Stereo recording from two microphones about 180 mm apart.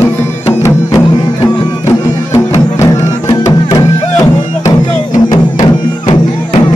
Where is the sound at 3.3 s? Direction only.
20° left (ahead or behind).